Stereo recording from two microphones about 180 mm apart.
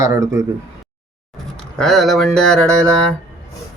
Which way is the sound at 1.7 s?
Centre (ahead or behind).